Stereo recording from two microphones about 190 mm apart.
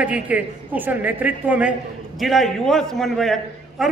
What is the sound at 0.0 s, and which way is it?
A man's voice, 5° right (ahead or behind).